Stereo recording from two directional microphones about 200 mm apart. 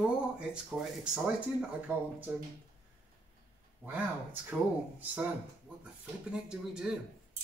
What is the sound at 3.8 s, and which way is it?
Speech, 10° right (ahead or behind).